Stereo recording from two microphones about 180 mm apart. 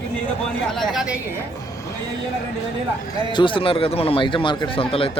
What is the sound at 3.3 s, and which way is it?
A man's voice, 25° left (ahead or behind).